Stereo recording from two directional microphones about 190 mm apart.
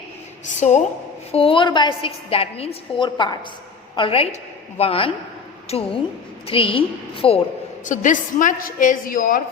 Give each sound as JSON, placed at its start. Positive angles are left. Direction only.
{"t": 0.4, "sound": "a woman's voice", "side_deg": 40}
{"t": 7.9, "sound": "a woman's voice", "side_deg": 40}